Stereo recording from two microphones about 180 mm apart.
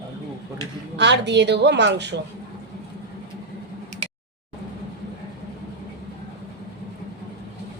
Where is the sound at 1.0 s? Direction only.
75° right (ahead or behind).